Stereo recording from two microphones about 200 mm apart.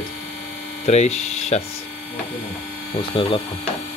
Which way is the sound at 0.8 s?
35° left (ahead or behind).